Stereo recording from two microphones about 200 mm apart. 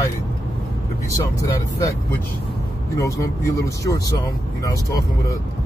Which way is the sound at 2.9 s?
15° left (ahead or behind).